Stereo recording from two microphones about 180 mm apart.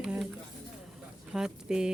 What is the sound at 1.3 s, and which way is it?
Speech, 5° right (ahead or behind).